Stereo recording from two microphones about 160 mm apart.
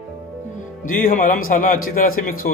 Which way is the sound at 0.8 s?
55° left (ahead or behind).